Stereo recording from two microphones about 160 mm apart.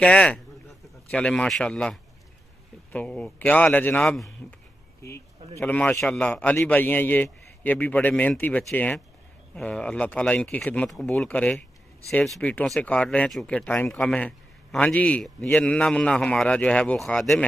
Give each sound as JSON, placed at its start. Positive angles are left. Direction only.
{"t": 0.0, "sound": "a man's voice", "side_deg": 5}
{"t": 5.0, "sound": "speech", "side_deg": 20}